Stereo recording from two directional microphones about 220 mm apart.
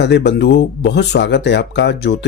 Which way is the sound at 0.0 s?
50° left (ahead or behind).